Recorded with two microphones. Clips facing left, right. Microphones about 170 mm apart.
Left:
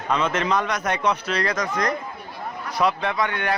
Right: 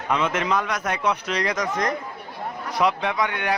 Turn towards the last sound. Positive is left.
turn(degrees=-15)  # may be behind; listen again after turning